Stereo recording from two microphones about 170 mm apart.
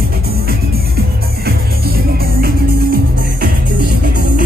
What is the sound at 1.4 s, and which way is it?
Music, 65° right (ahead or behind).